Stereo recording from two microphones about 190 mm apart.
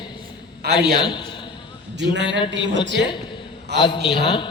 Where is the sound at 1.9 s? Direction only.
65° right (ahead or behind).